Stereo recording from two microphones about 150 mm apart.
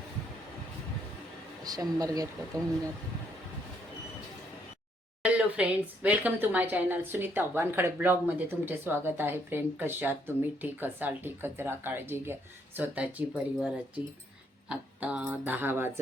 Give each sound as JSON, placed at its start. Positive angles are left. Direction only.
{"t": 1.6, "sound": "speech", "side_deg": -25}
{"t": 5.2, "sound": "a woman's voice", "side_deg": -10}